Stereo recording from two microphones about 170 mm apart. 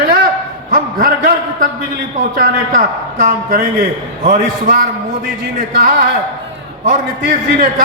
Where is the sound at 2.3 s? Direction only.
50° right (ahead or behind).